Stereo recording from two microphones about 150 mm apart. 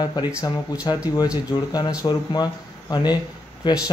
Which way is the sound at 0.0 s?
30° left (ahead or behind).